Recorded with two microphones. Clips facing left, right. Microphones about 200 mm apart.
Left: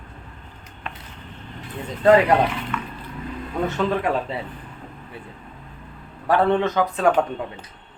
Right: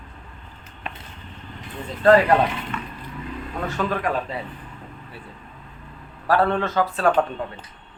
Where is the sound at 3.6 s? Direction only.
25° left (ahead or behind).